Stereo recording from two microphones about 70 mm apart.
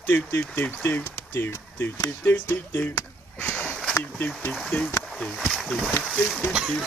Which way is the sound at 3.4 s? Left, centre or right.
Left.